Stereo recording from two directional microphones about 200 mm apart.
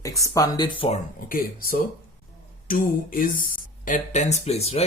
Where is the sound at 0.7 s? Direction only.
30° left (ahead or behind).